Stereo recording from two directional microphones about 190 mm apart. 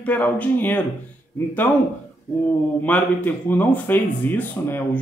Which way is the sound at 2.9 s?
10° left (ahead or behind).